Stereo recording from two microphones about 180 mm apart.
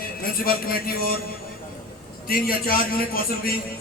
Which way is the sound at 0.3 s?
55° left (ahead or behind).